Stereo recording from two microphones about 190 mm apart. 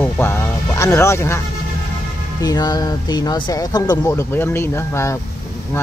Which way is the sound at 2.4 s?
20° left (ahead or behind).